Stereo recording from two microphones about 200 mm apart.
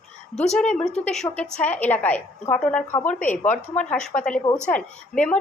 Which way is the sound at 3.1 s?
40° left (ahead or behind).